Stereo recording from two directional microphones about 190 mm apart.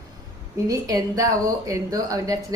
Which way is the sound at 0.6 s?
20° right (ahead or behind).